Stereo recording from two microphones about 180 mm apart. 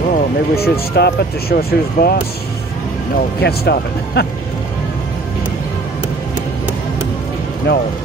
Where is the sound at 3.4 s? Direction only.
60° left (ahead or behind).